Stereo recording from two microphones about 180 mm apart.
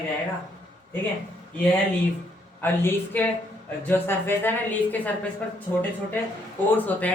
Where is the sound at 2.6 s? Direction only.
10° left (ahead or behind).